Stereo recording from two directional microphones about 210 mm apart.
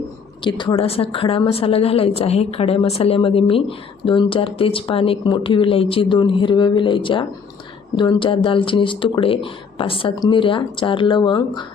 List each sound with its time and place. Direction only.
0.4 s a woman's voice: 20° left (ahead or behind)